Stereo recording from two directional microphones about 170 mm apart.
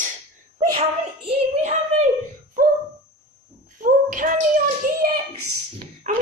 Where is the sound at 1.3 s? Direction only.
40° right (ahead or behind).